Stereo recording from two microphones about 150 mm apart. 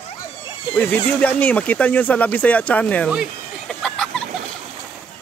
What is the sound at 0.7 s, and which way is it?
Speech, 10° left (ahead or behind).